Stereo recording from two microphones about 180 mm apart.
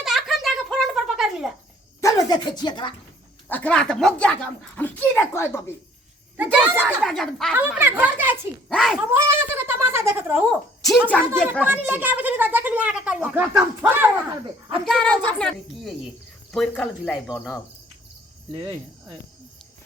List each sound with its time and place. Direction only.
0.0 s a sound: centre (ahead or behind)
2.0 s speech: 20° left (ahead or behind)
3.5 s speech: 5° left (ahead or behind)
6.3 s a sound: 10° right (ahead or behind)
6.8 s speech: centre (ahead or behind)
7.5 s speech: 10° right (ahead or behind)
11.1 s speech: 5° left (ahead or behind)
11.6 s speech: 10° right (ahead or behind)
14.8 s speech: 5° left (ahead or behind)